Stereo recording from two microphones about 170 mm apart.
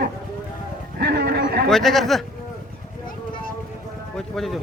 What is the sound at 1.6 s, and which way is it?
Speech, centre (ahead or behind).